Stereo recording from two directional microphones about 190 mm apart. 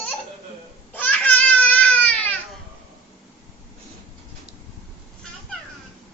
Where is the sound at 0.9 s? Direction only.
10° left (ahead or behind).